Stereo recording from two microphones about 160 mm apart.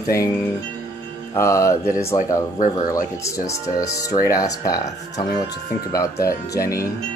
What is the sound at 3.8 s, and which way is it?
Speech, 20° left (ahead or behind).